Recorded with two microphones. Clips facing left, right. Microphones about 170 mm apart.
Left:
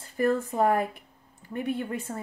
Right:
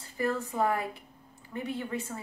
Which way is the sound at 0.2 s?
50° left (ahead or behind).